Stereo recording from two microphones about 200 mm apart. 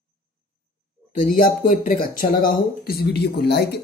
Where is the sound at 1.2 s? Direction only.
45° left (ahead or behind).